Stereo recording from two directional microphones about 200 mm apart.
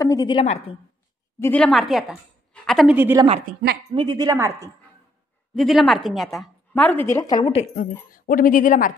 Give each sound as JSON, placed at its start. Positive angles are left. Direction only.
{"t": 0.0, "sound": "a woman's voice", "side_deg": 20}
{"t": 0.4, "sound": "a woman's voice", "side_deg": 30}
{"t": 1.4, "sound": "a woman's voice", "side_deg": 5}
{"t": 3.0, "sound": "a woman's voice", "side_deg": -10}
{"t": 3.9, "sound": "a woman's voice", "side_deg": -20}
{"t": 5.5, "sound": "a woman's voice", "side_deg": 0}
{"t": 8.1, "sound": "speech", "side_deg": 45}